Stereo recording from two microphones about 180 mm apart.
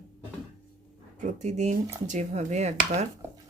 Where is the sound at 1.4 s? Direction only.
40° right (ahead or behind).